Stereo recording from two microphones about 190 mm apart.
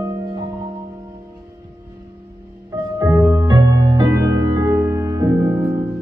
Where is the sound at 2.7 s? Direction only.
15° right (ahead or behind).